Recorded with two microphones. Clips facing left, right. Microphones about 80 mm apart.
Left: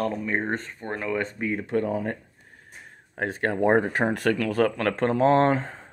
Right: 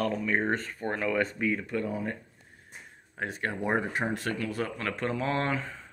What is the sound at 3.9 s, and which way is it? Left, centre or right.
Speech, left.